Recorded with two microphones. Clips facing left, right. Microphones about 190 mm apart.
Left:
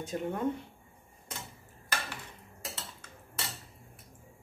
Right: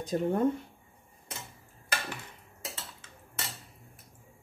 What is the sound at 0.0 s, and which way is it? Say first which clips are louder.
Speech: right 6 dB; 35° right (ahead or behind).